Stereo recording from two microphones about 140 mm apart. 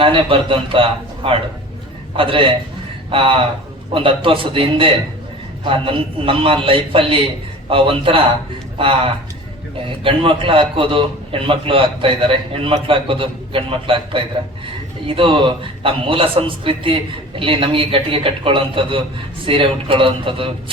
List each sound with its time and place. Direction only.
0.0 s a man's voice: 40° right (ahead or behind)
10.0 s a man's voice: 40° right (ahead or behind)